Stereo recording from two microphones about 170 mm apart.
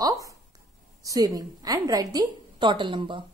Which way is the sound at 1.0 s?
20° right (ahead or behind).